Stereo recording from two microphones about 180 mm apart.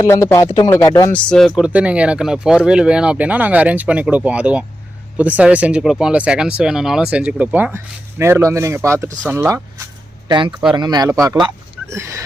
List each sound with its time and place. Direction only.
0.0 s speech: 15° left (ahead or behind)
1.1 s speech: 5° left (ahead or behind); by 12.2 s 15° right (ahead or behind)